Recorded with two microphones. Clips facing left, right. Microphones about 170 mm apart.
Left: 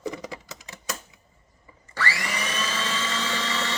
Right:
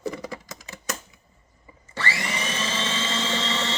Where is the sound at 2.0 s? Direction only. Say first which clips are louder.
Even; 25° right (ahead or behind).